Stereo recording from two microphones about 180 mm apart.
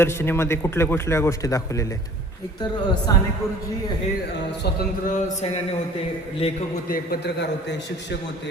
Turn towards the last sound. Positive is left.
turn(degrees=50)  # may be behind; listen again after turning